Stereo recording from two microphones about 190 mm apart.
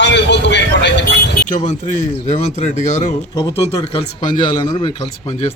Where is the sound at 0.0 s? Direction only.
65° left (ahead or behind).